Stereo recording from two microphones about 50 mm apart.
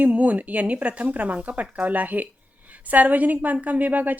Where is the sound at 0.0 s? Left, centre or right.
Right.